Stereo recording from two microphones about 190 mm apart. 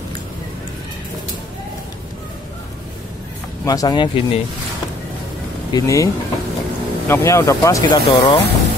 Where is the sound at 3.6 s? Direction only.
20° left (ahead or behind).